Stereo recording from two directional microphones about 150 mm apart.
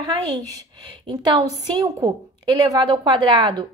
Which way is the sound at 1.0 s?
35° right (ahead or behind).